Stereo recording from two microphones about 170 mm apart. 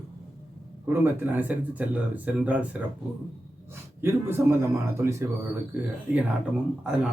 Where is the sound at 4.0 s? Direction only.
15° right (ahead or behind).